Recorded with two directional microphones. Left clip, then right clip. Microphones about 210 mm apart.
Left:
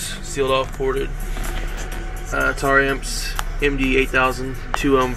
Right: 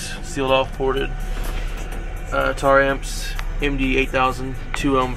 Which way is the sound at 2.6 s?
15° left (ahead or behind).